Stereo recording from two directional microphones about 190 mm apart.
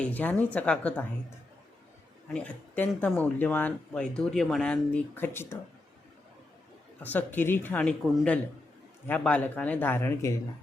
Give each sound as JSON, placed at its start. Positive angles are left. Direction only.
{"t": 0.0, "sound": "speech", "side_deg": 10}
{"t": 2.3, "sound": "speech", "side_deg": 10}
{"t": 7.0, "sound": "speech", "side_deg": 10}